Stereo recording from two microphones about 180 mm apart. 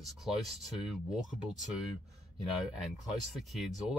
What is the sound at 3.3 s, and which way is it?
Speech, centre (ahead or behind).